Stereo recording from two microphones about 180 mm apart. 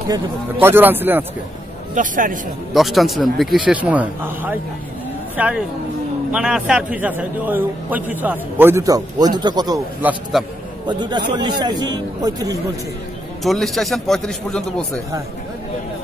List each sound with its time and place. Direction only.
0.1 s a man's voice: 10° right (ahead or behind)
2.0 s speech: 45° right (ahead or behind)
2.7 s a man's voice: centre (ahead or behind); by 9.8 s 25° right (ahead or behind)
10.0 s a man's voice: 10° right (ahead or behind)
10.9 s speech: 25° right (ahead or behind)
13.4 s a man's voice: centre (ahead or behind)